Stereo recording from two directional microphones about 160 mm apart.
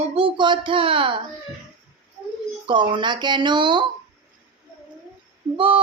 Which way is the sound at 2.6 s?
30° right (ahead or behind).